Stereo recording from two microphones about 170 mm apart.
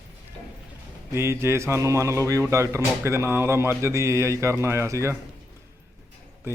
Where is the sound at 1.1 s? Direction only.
15° right (ahead or behind).